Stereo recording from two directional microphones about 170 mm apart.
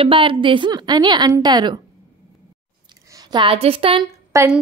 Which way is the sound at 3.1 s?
25° right (ahead or behind).